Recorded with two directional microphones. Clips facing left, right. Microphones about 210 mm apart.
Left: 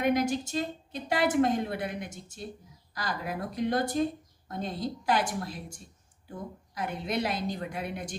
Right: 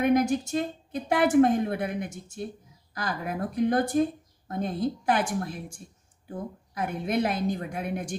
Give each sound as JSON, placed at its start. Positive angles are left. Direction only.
{"t": 0.0, "sound": "a woman's voice", "side_deg": -55}
{"t": 6.7, "sound": "a woman's voice", "side_deg": -50}